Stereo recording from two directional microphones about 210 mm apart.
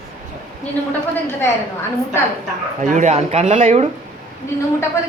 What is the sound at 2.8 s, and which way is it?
Speech, 35° right (ahead or behind).